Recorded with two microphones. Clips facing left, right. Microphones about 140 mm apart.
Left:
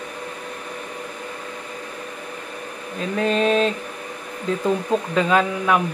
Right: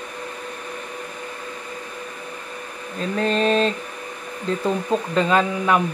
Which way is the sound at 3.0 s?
5° left (ahead or behind).